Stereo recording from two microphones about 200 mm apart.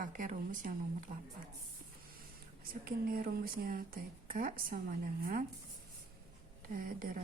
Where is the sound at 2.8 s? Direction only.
45° right (ahead or behind).